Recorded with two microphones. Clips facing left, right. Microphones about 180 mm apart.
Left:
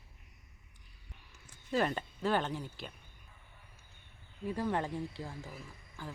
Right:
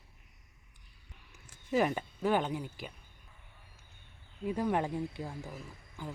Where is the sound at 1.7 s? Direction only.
15° right (ahead or behind).